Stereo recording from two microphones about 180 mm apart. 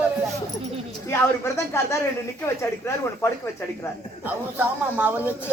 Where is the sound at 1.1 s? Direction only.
15° left (ahead or behind).